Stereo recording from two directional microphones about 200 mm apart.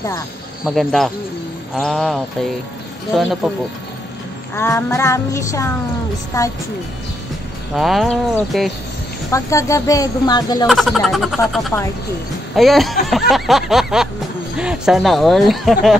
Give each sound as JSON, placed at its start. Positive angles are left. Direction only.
{"t": 0.7, "sound": "speech", "side_deg": 0}
{"t": 4.6, "sound": "speech", "side_deg": 10}
{"t": 7.7, "sound": "speech", "side_deg": 0}
{"t": 9.3, "sound": "speech", "side_deg": 15}
{"t": 10.7, "sound": "speech", "side_deg": 0}